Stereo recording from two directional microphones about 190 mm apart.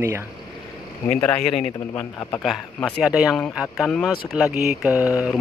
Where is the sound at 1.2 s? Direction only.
5° left (ahead or behind).